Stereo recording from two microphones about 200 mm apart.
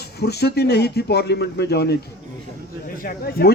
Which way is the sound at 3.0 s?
45° left (ahead or behind).